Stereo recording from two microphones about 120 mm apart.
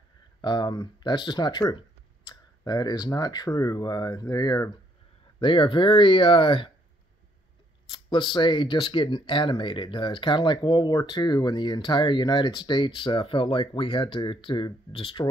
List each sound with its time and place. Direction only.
0.4 s speech: 40° left (ahead or behind)
5.4 s speech: 45° left (ahead or behind)
7.9 s speech: 40° left (ahead or behind)